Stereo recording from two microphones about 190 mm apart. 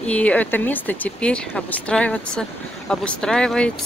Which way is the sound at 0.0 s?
5° left (ahead or behind).